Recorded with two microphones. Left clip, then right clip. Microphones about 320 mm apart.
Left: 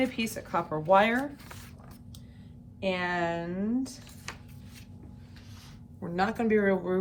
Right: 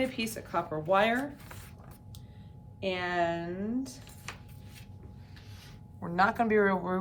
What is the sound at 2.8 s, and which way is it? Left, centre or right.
Speech, centre.